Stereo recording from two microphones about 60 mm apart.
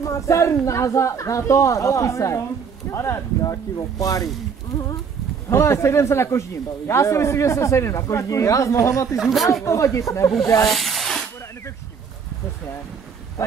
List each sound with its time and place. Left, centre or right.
0.0 s speech: left
3.7 s speech: left
5.5 s speech: left
9.1 s speech: centre
9.7 s speech: left
10.7 s a sound: centre